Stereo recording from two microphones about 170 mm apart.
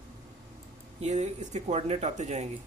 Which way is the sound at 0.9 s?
40° right (ahead or behind).